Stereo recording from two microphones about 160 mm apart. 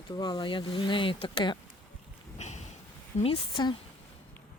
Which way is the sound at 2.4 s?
45° left (ahead or behind).